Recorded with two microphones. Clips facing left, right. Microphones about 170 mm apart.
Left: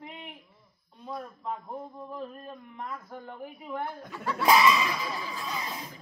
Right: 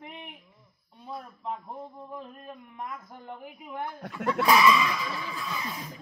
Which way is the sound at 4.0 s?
65° right (ahead or behind).